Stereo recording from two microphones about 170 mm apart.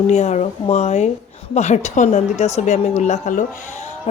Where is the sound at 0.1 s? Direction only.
40° left (ahead or behind).